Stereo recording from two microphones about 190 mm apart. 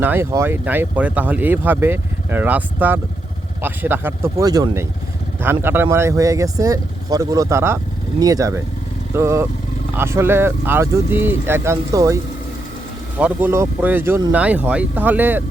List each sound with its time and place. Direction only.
0.0 s speech: 10° right (ahead or behind)